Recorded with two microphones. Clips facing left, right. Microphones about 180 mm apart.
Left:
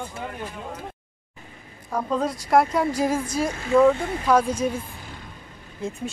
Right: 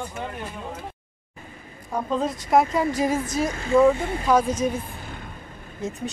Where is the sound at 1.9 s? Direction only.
Centre (ahead or behind).